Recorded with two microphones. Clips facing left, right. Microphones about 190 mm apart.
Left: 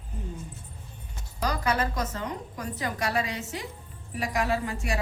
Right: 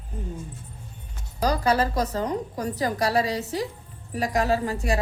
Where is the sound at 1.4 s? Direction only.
35° right (ahead or behind).